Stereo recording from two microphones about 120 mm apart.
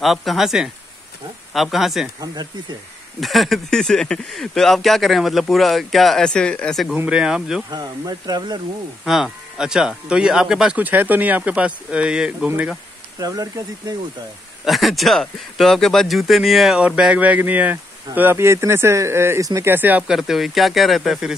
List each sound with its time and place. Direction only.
0.0 s speech: centre (ahead or behind)
2.1 s speech: 35° right (ahead or behind)
3.2 s speech: centre (ahead or behind)
7.7 s speech: 35° right (ahead or behind)
9.0 s speech: 5° right (ahead or behind)
13.2 s speech: 30° right (ahead or behind)
14.6 s speech: centre (ahead or behind)
20.2 s speech: 5° right (ahead or behind)